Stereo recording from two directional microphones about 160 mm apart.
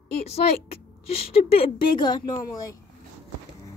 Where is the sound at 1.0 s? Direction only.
35° left (ahead or behind).